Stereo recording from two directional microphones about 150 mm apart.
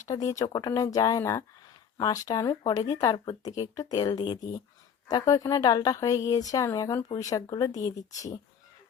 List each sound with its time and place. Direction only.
0.0 s a woman's voice: 25° left (ahead or behind)